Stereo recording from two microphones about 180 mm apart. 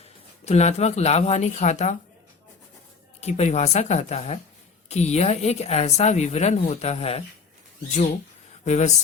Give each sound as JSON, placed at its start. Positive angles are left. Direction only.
{"t": 0.4, "sound": "speech", "side_deg": 35}
{"t": 3.2, "sound": "speech", "side_deg": 35}
{"t": 8.6, "sound": "speech", "side_deg": 40}